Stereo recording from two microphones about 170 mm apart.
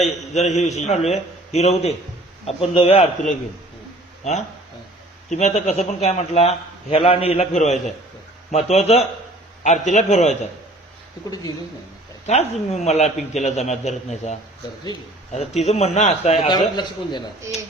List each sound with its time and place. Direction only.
0.0 s a man's voice: 40° left (ahead or behind)
12.2 s a man's voice: 40° left (ahead or behind)
16.5 s a man's voice: 25° left (ahead or behind)